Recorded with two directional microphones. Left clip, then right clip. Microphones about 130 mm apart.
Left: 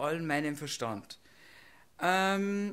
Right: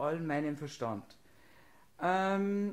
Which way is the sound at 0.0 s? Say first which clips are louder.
Left 2 dB; 20° left (ahead or behind).